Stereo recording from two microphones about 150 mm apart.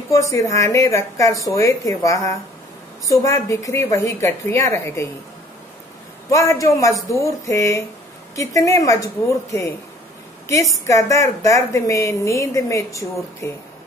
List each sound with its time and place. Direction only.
0.1 s a woman's voice: 20° left (ahead or behind)
6.3 s a woman's voice: 20° left (ahead or behind)